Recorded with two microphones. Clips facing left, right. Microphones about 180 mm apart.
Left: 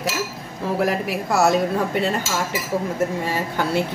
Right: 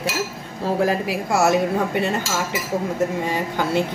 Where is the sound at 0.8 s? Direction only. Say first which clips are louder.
Right 1 dB; 25° right (ahead or behind).